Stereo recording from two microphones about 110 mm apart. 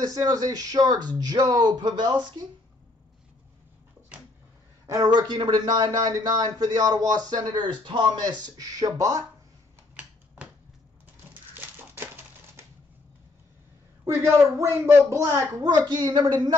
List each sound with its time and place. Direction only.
0.0 s a man's voice: 35° right (ahead or behind)
4.8 s a man's voice: 35° right (ahead or behind)
9.9 s a sound: 10° right (ahead or behind)
14.0 s a man's voice: 25° right (ahead or behind)